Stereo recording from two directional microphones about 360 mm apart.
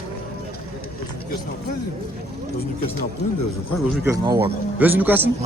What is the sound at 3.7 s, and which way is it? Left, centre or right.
A man's voice, centre.